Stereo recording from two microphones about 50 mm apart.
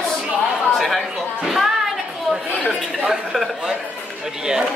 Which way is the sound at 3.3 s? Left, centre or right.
Centre.